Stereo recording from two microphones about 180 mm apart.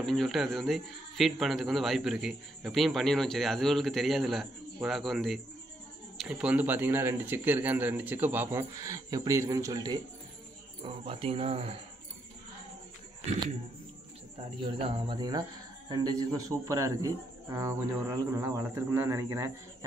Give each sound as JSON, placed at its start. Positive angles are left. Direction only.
{"t": 0.0, "sound": "a man's voice", "side_deg": 0}
{"t": 10.8, "sound": "speech", "side_deg": -30}
{"t": 14.6, "sound": "speech", "side_deg": -25}